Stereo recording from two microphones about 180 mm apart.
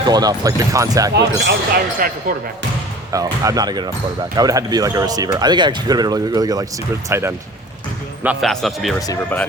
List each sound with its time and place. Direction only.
0.0 s speech: 20° right (ahead or behind)
1.1 s speech: 60° right (ahead or behind)
3.1 s speech: 20° right (ahead or behind); by 9.0 s centre (ahead or behind)